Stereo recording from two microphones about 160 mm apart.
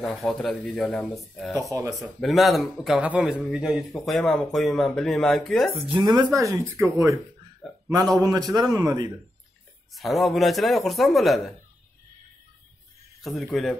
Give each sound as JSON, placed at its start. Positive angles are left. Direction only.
{"t": 0.0, "sound": "a man's voice", "side_deg": 5}
{"t": 1.6, "sound": "a man's voice", "side_deg": -20}
{"t": 2.1, "sound": "a man's voice", "side_deg": 0}
{"t": 5.8, "sound": "a man's voice", "side_deg": -30}
{"t": 9.9, "sound": "a man's voice", "side_deg": 0}
{"t": 13.2, "sound": "a man's voice", "side_deg": 0}